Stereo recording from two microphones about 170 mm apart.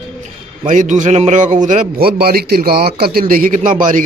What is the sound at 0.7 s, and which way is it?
A man's voice, 50° right (ahead or behind).